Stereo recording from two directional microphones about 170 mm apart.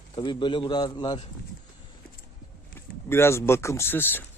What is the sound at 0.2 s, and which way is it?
A man's voice, 30° left (ahead or behind).